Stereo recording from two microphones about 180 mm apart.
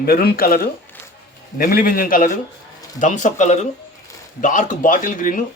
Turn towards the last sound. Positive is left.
turn(degrees=45)  # may be behind; listen again after turning